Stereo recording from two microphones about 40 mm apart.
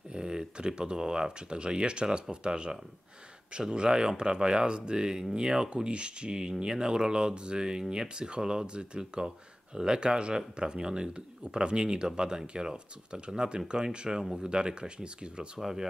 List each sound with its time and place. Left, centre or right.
0.1 s speech: right
15.6 s speech: centre